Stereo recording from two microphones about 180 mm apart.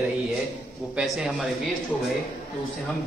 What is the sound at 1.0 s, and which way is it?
Speech, 5° right (ahead or behind).